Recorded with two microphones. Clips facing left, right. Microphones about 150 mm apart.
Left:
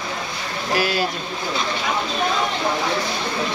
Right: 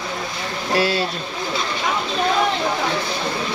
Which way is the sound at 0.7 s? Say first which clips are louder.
Right 2 dB; 30° right (ahead or behind).